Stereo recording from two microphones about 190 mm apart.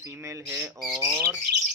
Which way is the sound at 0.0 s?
15° right (ahead or behind).